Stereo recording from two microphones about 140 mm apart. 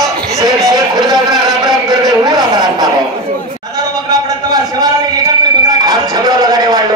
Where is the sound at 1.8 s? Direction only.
30° right (ahead or behind).